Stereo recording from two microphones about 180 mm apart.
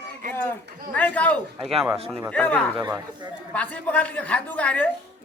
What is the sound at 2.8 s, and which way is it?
Speech, 15° right (ahead or behind).